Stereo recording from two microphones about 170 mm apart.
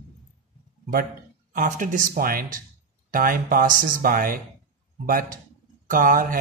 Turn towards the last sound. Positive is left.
turn(degrees=-55)  # may be behind; listen again after turning